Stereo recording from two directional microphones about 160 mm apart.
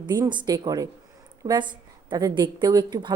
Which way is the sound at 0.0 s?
30° right (ahead or behind).